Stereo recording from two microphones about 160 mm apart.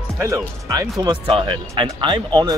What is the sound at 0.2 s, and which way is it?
Speech, 20° right (ahead or behind).